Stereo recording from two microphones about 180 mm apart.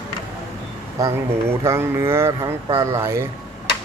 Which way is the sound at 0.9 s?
15° right (ahead or behind).